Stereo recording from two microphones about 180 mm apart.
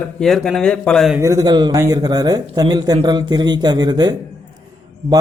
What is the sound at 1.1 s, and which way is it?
A man's voice, 15° right (ahead or behind).